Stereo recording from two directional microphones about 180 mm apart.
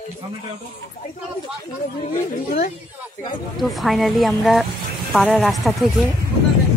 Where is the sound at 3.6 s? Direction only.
Centre (ahead or behind).